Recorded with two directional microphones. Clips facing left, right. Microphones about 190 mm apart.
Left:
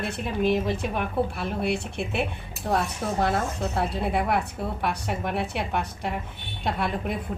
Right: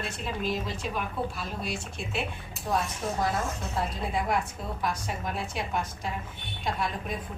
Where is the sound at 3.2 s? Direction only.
65° left (ahead or behind).